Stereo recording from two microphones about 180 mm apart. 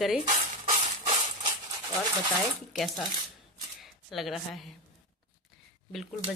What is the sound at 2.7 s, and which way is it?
Speech, centre (ahead or behind).